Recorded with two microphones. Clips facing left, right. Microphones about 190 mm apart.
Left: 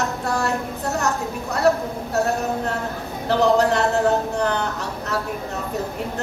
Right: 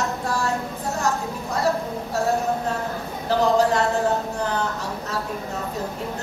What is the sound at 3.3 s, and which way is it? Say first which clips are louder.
A woman's voice: left 2 dB; 65° left (ahead or behind).